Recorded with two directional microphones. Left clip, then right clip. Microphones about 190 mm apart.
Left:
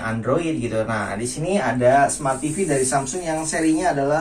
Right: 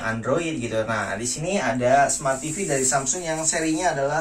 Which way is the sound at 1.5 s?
15° right (ahead or behind).